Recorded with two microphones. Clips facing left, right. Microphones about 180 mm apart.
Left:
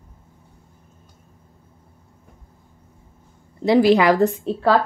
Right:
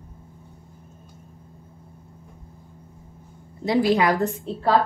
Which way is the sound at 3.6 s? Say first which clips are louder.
Left 5 dB; 80° left.